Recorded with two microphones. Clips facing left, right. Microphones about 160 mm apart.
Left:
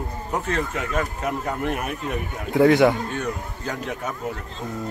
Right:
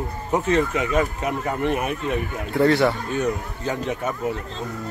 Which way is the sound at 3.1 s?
5° right (ahead or behind).